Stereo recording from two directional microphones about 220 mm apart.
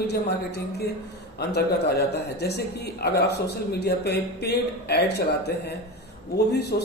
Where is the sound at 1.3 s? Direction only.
45° left (ahead or behind).